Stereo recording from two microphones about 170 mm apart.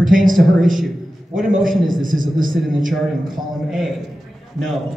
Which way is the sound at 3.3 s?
Centre (ahead or behind).